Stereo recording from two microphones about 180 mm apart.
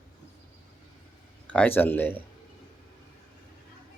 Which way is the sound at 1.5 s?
10° left (ahead or behind).